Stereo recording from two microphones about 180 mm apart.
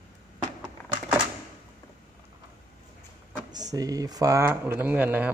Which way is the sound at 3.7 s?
20° right (ahead or behind).